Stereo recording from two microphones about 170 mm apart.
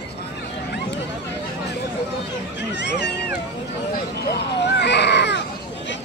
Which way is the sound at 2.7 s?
90° left.